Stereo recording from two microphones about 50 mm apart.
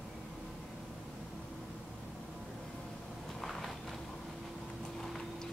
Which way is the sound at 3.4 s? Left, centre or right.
Centre.